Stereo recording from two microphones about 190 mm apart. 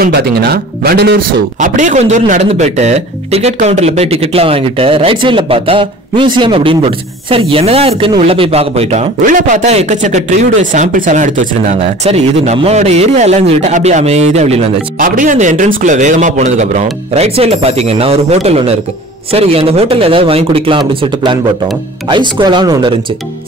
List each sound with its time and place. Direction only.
0.0 s speech: 55° right (ahead or behind)
1.6 s a man's voice: 40° right (ahead or behind); by 22.9 s 25° right (ahead or behind)